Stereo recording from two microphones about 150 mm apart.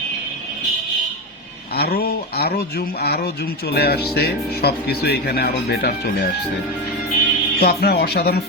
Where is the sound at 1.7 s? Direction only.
90° left.